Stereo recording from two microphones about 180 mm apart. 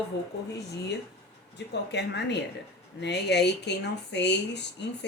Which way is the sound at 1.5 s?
70° left (ahead or behind).